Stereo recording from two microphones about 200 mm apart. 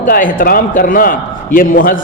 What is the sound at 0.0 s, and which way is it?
A man's voice, 45° left (ahead or behind).